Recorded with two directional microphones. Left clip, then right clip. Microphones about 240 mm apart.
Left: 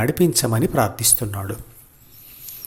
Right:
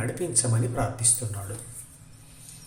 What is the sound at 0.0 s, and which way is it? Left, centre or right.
A man's voice, left.